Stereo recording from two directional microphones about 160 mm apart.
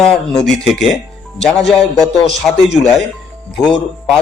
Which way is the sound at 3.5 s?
Centre (ahead or behind).